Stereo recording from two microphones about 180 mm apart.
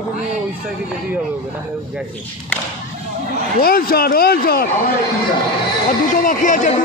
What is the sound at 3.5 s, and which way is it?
Speech, 55° left (ahead or behind).